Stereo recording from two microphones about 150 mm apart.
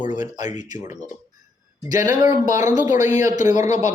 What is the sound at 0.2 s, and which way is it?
Speech, 55° left (ahead or behind).